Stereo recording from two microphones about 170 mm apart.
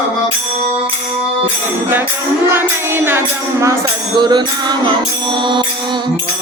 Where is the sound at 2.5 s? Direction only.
15° right (ahead or behind).